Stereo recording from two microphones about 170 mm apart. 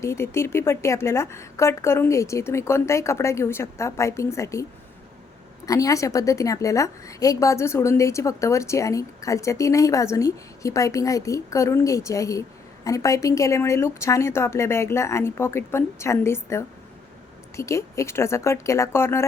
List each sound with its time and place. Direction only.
0.0 s a woman's voice: 15° left (ahead or behind)
5.6 s a woman's voice: 20° left (ahead or behind)